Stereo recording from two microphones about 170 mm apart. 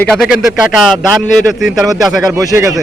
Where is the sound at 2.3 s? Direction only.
15° right (ahead or behind).